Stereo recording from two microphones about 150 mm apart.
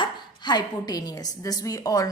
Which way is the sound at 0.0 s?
30° left (ahead or behind).